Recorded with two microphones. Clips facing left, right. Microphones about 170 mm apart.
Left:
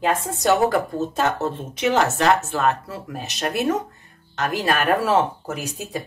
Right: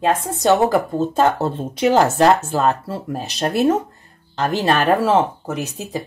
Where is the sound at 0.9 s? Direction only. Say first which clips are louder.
Right 5 dB; 30° right (ahead or behind).